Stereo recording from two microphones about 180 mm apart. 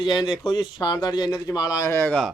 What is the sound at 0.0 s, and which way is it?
Speech, 25° left (ahead or behind).